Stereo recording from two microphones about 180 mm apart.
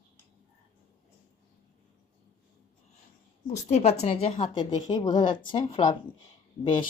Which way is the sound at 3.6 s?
35° left (ahead or behind).